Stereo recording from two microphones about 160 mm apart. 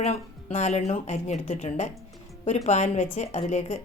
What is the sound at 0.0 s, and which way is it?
Speech, 45° left (ahead or behind).